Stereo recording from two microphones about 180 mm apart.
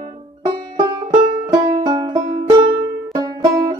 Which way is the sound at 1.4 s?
20° right (ahead or behind).